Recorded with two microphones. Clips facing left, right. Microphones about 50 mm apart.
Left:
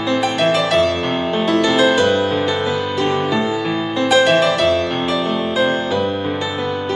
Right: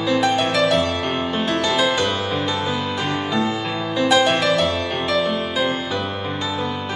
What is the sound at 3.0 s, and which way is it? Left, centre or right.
Music, left.